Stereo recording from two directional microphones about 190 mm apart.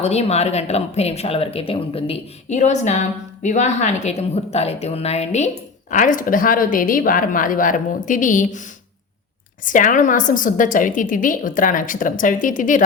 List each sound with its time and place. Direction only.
0.0 s a woman's voice: 35° left (ahead or behind)